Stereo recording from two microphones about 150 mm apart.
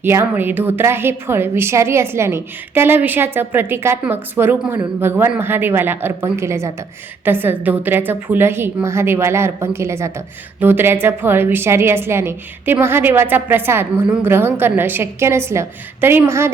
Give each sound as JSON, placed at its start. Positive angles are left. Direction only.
{"t": 0.0, "sound": "a woman's voice", "side_deg": -15}